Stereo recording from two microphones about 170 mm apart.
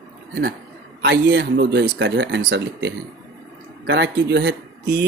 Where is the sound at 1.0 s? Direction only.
90° right; by 5.1 s 70° right (ahead or behind).